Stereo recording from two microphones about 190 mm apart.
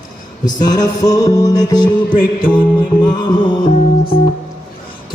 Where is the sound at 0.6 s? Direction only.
20° left (ahead or behind).